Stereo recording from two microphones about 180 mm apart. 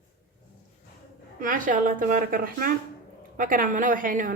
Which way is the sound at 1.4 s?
50° right (ahead or behind).